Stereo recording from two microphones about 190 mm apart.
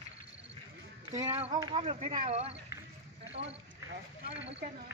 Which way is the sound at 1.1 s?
30° right (ahead or behind).